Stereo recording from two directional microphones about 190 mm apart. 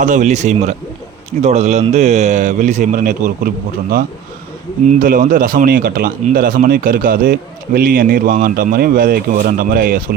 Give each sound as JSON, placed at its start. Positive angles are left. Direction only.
{"t": 0.0, "sound": "speech", "side_deg": -40}
{"t": 4.9, "sound": "speech", "side_deg": -45}